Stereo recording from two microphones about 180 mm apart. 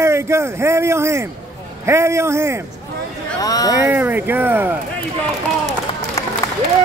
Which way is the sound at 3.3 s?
20° left (ahead or behind).